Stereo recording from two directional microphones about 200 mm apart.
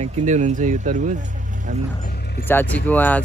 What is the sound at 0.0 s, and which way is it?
Speech, 35° right (ahead or behind).